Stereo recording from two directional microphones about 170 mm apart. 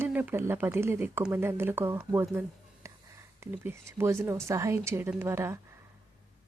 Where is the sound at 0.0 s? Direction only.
10° right (ahead or behind).